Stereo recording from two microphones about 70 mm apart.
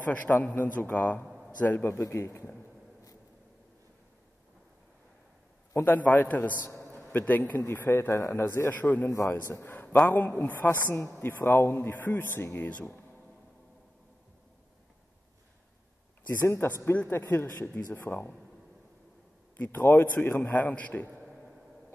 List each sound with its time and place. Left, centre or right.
0.0 s a man's voice: left
1.2 s a sound: centre
1.6 s a man's voice: left
2.0 s a man's voice: left
5.9 s a man's voice: left
6.6 s a sound: left
7.0 s a man's voice: left
8.1 s a man's voice: left
9.3 s a man's voice: left
16.3 s a man's voice: left
19.5 s a man's voice: left